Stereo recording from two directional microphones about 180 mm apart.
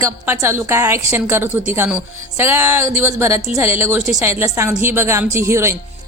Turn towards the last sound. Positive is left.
turn(degrees=-15)  # may be behind; listen again after turning